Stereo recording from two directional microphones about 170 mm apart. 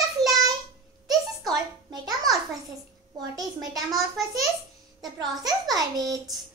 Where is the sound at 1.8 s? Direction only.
25° right (ahead or behind).